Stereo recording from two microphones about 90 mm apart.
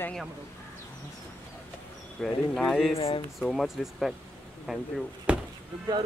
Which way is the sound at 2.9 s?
90° left.